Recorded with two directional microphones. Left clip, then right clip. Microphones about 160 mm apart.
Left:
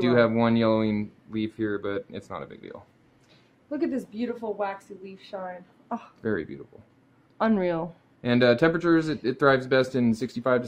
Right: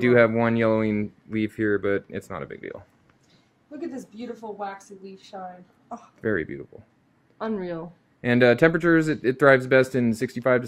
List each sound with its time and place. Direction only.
0.0 s speech: 5° right (ahead or behind)
4.4 s a woman's voice: 25° left (ahead or behind)
6.2 s speech: 5° right (ahead or behind)
7.3 s speech: 15° left (ahead or behind)
8.2 s speech: 10° right (ahead or behind)